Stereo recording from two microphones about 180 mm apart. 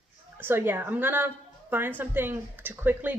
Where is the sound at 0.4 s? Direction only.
10° right (ahead or behind).